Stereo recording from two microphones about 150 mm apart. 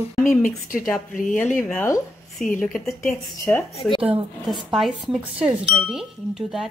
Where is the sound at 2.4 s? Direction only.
60° left (ahead or behind).